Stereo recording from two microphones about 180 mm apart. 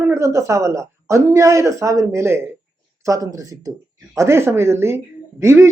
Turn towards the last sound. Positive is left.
turn(degrees=-15)  # may be behind; listen again after turning